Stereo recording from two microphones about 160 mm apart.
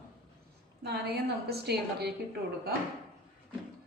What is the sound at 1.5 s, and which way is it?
Speech, 90° right.